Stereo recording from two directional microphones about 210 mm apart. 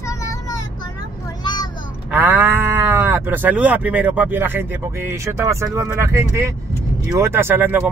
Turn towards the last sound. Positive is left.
turn(degrees=-10)  # may be behind; listen again after turning